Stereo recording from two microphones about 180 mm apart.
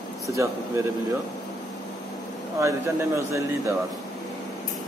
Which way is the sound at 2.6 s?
15° right (ahead or behind).